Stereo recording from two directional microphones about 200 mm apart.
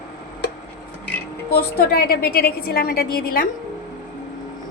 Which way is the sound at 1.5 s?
50° left (ahead or behind).